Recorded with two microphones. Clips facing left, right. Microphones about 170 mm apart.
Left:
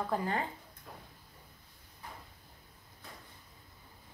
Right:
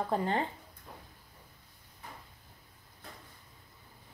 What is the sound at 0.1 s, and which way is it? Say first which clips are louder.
Speech: right 3 dB; 25° right (ahead or behind).